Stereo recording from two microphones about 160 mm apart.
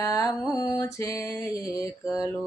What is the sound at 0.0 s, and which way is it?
Music, 20° left (ahead or behind).